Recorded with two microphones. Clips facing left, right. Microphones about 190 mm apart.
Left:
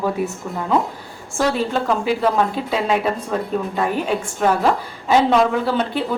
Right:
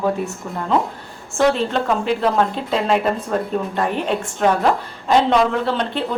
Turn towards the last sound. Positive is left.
turn(degrees=5)  # may be behind; listen again after turning